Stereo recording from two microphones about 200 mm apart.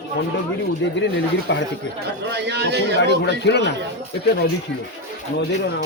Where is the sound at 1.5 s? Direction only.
65° left (ahead or behind).